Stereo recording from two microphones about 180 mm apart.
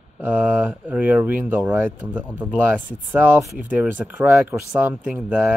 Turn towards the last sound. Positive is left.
turn(degrees=-10)  # may be behind; listen again after turning